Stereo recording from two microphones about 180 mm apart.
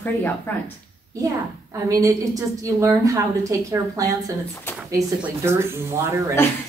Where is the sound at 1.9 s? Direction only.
20° right (ahead or behind).